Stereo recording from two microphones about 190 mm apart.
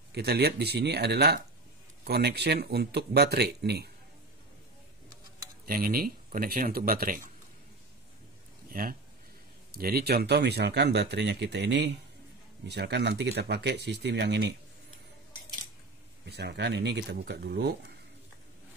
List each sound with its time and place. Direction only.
0.1 s speech: 55° right (ahead or behind)
5.7 s speech: 50° right (ahead or behind)
8.7 s speech: 50° right (ahead or behind); by 14.5 s 65° right (ahead or behind)
16.3 s speech: 60° right (ahead or behind)